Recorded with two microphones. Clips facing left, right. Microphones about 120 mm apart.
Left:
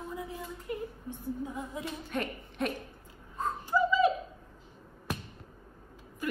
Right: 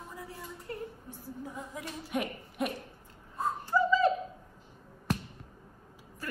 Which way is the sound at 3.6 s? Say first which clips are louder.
Even; 15° left (ahead or behind).